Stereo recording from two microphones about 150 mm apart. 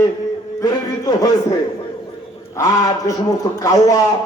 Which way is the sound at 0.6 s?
25° left (ahead or behind).